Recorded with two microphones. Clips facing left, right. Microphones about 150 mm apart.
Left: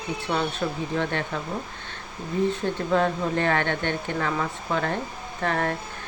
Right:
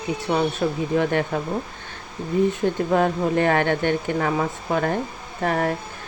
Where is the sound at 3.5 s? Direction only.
40° right (ahead or behind).